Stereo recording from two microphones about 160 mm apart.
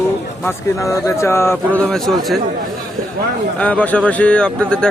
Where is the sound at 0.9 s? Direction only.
15° left (ahead or behind).